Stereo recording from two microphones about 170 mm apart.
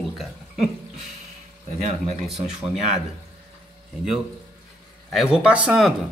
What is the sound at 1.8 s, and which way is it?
Speech, 40° right (ahead or behind).